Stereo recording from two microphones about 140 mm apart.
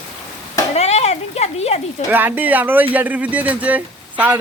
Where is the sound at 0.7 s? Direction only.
50° left (ahead or behind).